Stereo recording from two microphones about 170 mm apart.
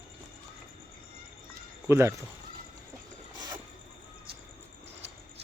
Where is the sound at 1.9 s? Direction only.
15° right (ahead or behind).